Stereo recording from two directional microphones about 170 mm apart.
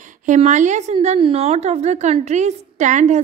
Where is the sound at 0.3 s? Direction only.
45° right (ahead or behind).